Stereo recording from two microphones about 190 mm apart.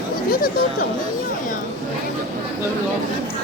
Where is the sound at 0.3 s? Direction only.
50° left (ahead or behind).